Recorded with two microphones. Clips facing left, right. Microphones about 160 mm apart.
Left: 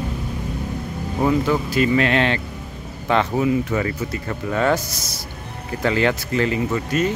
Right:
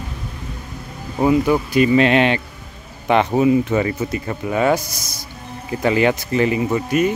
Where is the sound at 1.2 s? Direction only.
10° right (ahead or behind).